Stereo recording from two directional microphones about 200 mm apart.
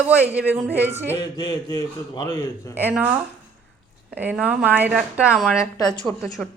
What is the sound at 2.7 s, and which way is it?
Speech, 10° right (ahead or behind).